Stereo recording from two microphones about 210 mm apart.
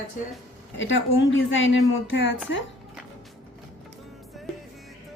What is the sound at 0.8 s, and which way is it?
A woman's voice, 65° left (ahead or behind).